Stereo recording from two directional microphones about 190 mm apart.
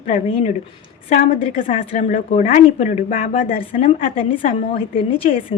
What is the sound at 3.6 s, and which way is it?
A woman's voice, 30° left (ahead or behind).